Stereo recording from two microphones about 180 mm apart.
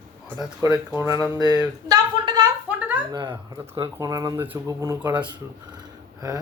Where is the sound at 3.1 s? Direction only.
25° right (ahead or behind).